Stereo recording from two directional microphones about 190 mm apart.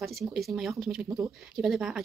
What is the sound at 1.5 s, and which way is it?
Speech, centre (ahead or behind).